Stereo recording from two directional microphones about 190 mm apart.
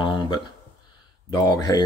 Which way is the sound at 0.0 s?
25° left (ahead or behind).